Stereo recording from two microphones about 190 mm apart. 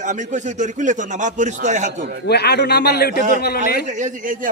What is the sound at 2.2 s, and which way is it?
A man's voice, 60° left (ahead or behind).